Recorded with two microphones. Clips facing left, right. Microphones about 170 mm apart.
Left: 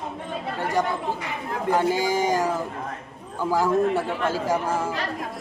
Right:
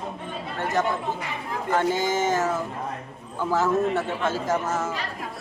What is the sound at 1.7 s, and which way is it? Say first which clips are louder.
Speech: left 1 dB; 10° left (ahead or behind).